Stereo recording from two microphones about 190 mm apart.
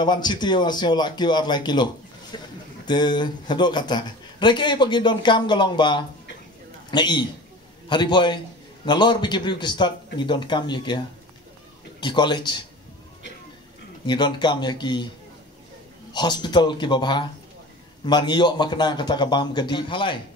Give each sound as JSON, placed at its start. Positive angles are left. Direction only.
{"t": 0.0, "sound": "a man's voice", "side_deg": 20}
{"t": 2.9, "sound": "a man's voice", "side_deg": 25}
{"t": 12.0, "sound": "a man's voice", "side_deg": 25}
{"t": 14.0, "sound": "a man's voice", "side_deg": 25}
{"t": 16.1, "sound": "a man's voice", "side_deg": 20}